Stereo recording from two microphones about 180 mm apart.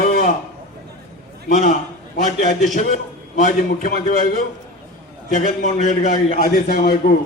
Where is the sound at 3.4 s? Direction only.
45° left (ahead or behind).